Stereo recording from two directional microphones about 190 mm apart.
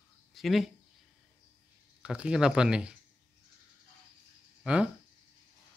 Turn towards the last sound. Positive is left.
turn(degrees=-5)  # may be behind; listen again after turning